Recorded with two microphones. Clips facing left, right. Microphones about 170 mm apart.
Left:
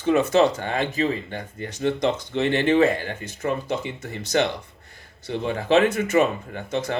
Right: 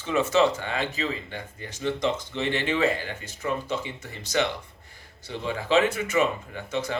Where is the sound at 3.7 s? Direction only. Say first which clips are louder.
Left 4 dB; 55° left (ahead or behind).